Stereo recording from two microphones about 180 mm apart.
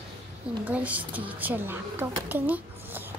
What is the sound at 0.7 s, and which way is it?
A woman's voice, 10° right (ahead or behind).